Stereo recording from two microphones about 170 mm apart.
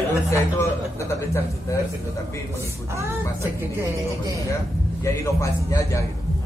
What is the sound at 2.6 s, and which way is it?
Speech, 15° right (ahead or behind).